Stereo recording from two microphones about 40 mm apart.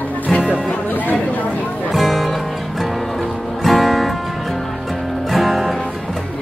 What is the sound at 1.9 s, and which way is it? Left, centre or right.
Music, centre.